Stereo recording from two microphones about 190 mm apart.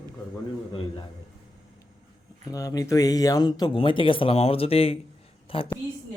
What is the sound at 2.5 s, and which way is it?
Speech, 15° left (ahead or behind).